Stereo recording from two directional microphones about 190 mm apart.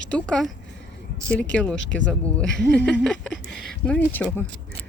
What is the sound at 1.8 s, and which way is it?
Speech, 70° left (ahead or behind).